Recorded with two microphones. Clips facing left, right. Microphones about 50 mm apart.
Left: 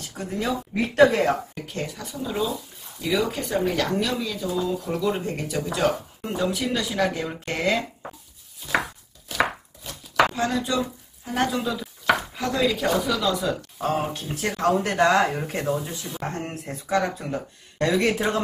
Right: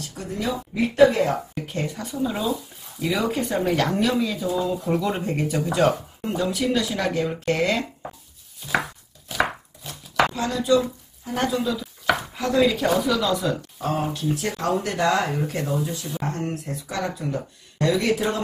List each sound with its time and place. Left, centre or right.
0.2 s a sound: centre
0.9 s speech: left
1.8 s speech: centre
6.2 s speech: centre
10.4 s speech: left
11.6 s chopping: centre
12.4 s speech: centre
13.7 s speech: left